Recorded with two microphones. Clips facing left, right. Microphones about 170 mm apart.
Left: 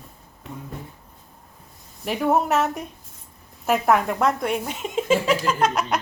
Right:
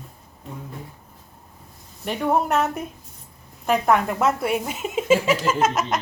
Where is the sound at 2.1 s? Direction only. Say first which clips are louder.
Left 1 dB; 5° left (ahead or behind).